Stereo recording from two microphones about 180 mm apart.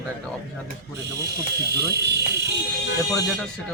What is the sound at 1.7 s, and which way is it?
Speech, 65° right (ahead or behind).